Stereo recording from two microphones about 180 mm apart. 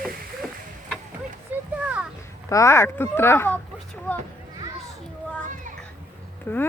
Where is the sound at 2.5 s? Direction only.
15° left (ahead or behind).